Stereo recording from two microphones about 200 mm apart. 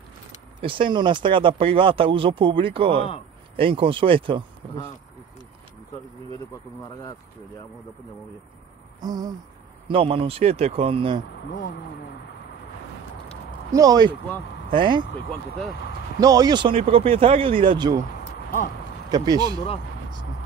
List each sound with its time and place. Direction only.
0.6 s speech: 25° right (ahead or behind)
9.0 s speech: 20° right (ahead or behind)
13.7 s speech: 20° right (ahead or behind)
16.2 s speech: 20° right (ahead or behind)
19.0 s speech: 20° right (ahead or behind)